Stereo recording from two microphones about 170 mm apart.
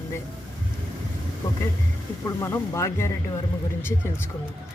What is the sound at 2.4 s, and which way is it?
Speech, 15° left (ahead or behind).